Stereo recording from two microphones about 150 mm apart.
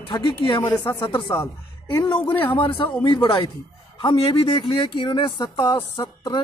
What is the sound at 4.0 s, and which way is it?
Speech, 35° left (ahead or behind).